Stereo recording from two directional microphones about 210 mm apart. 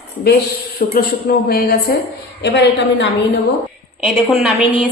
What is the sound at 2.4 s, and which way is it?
Speech, 55° left (ahead or behind).